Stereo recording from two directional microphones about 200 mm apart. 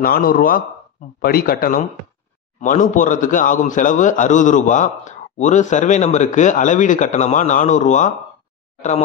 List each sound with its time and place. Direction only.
0.0 s a man's voice: 45° left (ahead or behind)